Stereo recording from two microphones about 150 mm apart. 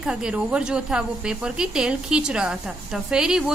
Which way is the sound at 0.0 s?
5° right (ahead or behind).